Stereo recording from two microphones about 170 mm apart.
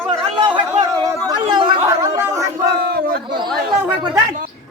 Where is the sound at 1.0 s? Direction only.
25° right (ahead or behind).